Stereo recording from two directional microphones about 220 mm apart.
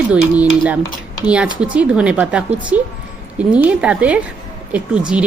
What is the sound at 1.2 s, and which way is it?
A woman's voice, 5° right (ahead or behind).